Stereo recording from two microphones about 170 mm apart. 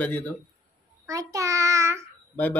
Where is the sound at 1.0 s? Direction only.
20° right (ahead or behind).